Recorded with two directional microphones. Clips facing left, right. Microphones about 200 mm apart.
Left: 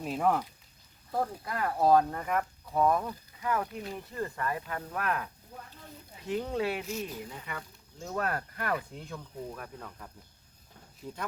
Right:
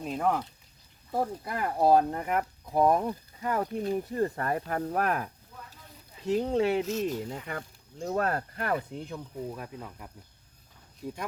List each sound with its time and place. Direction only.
0.0 s speech: centre (ahead or behind)
1.1 s speech: 10° right (ahead or behind)
1.8 s speech: 30° right (ahead or behind)
2.1 s speech: 20° right (ahead or behind)
2.7 s speech: 35° right (ahead or behind)
5.5 s a sound: 40° left (ahead or behind)
6.2 s speech: 30° right (ahead or behind)
7.0 s speech: 40° right (ahead or behind); by 11.2 s 10° right (ahead or behind)